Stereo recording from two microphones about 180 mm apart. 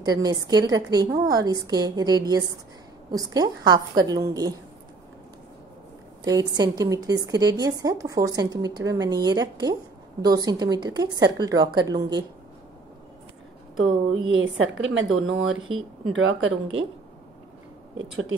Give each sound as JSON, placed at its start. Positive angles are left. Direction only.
{"t": 0.0, "sound": "a woman's voice", "side_deg": -20}
{"t": 6.2, "sound": "a woman's voice", "side_deg": -20}
{"t": 14.3, "sound": "a woman's voice", "side_deg": -90}